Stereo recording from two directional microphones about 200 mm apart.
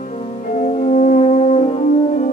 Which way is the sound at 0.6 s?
35° left (ahead or behind).